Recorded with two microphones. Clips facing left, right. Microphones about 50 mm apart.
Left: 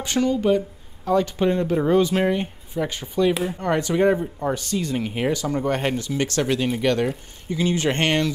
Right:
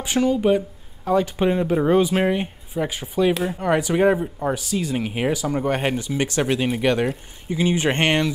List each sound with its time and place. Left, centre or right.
0.0 s speech: centre